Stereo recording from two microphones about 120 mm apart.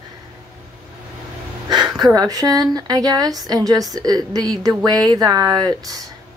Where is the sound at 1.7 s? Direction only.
35° right (ahead or behind).